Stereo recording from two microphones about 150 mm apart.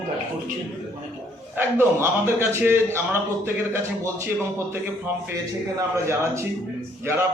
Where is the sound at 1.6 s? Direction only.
15° right (ahead or behind).